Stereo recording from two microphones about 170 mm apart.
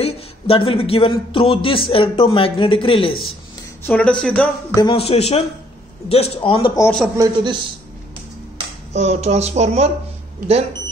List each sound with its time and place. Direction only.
0.0 s a man's voice: 35° left (ahead or behind)
3.8 s speech: 10° left (ahead or behind)
4.7 s a man's voice: 30° left (ahead or behind)
7.2 s a man's voice: 25° right (ahead or behind)
8.9 s speech: 40° right (ahead or behind)